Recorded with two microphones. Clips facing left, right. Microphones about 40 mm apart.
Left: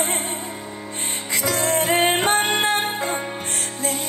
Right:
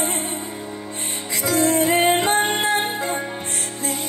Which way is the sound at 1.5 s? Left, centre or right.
Left.